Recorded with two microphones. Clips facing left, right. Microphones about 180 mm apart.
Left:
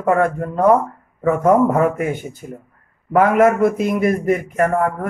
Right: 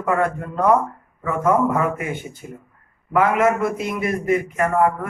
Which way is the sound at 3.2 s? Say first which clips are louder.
Left 4 dB; 45° left (ahead or behind).